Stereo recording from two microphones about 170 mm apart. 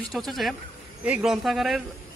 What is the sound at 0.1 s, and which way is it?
Speech, centre (ahead or behind).